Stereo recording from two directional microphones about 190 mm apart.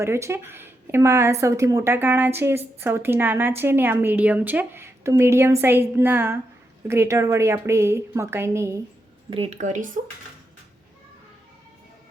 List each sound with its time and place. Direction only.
0.0 s a woman's voice: 15° right (ahead or behind)
9.3 s speech: 35° right (ahead or behind)